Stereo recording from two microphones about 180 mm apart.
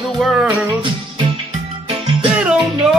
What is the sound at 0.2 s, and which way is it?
Music, 5° right (ahead or behind).